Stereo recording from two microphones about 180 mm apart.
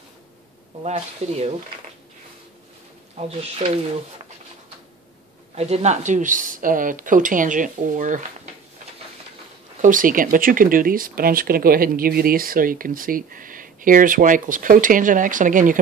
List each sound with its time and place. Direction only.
0.8 s speech: 35° right (ahead or behind)
3.2 s speech: 35° right (ahead or behind)
5.5 s speech: 35° right (ahead or behind)
9.8 s speech: 50° right (ahead or behind)